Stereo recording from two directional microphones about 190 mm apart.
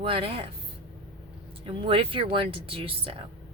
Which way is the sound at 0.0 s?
30° right (ahead or behind).